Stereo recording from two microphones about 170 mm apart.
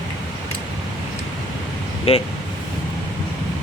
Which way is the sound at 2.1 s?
35° left (ahead or behind).